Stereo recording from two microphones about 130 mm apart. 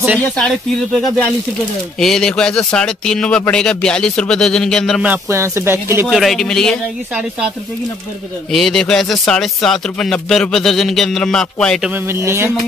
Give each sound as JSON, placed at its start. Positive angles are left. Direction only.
{"t": 0.4, "sound": "speech", "side_deg": 5}
{"t": 5.0, "sound": "speech", "side_deg": -20}
{"t": 6.0, "sound": "speech", "side_deg": 0}
{"t": 8.5, "sound": "speech", "side_deg": 0}
{"t": 11.9, "sound": "speech", "side_deg": -20}